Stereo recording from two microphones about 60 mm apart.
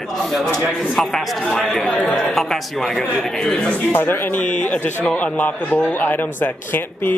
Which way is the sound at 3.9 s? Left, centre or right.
Left.